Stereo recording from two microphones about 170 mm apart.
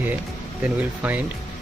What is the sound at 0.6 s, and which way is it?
Speech, 10° right (ahead or behind).